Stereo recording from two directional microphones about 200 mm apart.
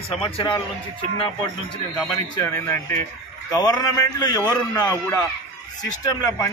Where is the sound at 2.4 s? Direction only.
15° left (ahead or behind).